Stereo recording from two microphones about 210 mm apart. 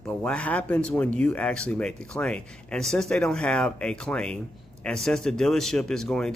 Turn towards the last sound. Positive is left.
turn(degrees=0)  # may be behind; listen again after turning